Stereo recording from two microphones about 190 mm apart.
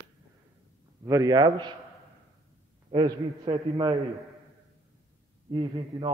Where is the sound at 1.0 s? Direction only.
15° right (ahead or behind).